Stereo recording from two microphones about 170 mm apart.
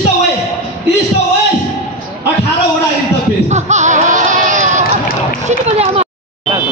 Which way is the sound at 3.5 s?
45° right (ahead or behind).